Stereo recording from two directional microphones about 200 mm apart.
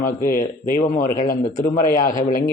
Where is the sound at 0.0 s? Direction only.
45° left (ahead or behind).